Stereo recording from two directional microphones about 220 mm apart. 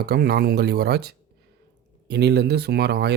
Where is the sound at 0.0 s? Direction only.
45° right (ahead or behind).